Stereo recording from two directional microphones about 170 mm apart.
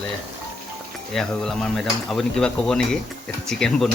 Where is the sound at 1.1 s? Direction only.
5° left (ahead or behind).